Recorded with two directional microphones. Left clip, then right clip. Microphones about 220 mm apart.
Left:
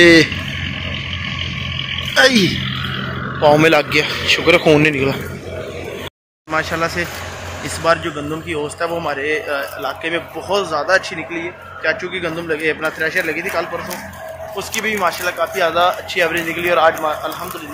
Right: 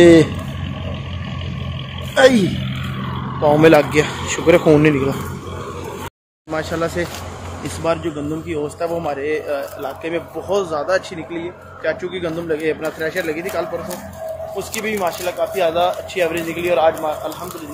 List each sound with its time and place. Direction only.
0.0 s a man's voice: 10° right (ahead or behind)
2.1 s a man's voice: 10° right (ahead or behind)
2.6 s roar: 40° right (ahead or behind)
3.4 s a man's voice: 5° right (ahead or behind)
6.5 s a man's voice: 5° right (ahead or behind)
14.8 s speech: 5° right (ahead or behind)